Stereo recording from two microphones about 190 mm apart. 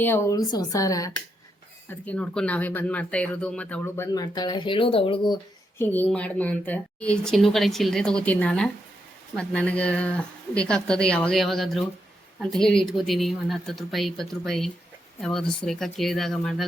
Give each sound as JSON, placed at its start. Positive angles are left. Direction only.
{"t": 0.0, "sound": "speech", "side_deg": 15}
{"t": 1.9, "sound": "speech", "side_deg": 5}
{"t": 5.8, "sound": "a woman's voice", "side_deg": 10}